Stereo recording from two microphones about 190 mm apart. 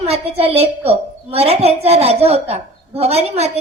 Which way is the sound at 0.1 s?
35° right (ahead or behind).